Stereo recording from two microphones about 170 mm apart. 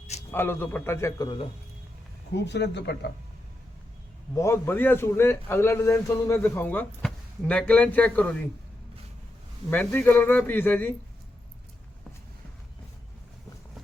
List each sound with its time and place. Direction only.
0.3 s a man's voice: 10° left (ahead or behind)
2.3 s speech: 85° left
4.4 s a man's voice: 15° left (ahead or behind)
9.6 s a man's voice: 10° left (ahead or behind)